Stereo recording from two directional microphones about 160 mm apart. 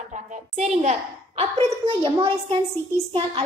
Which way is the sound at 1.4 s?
40° right (ahead or behind).